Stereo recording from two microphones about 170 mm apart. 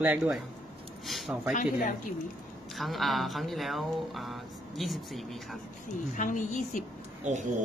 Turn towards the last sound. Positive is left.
turn(degrees=-45)  # may be behind; listen again after turning